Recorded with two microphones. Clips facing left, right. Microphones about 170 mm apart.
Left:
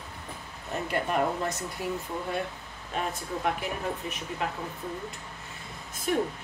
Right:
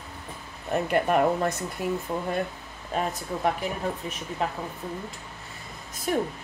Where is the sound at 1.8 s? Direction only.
50° right (ahead or behind).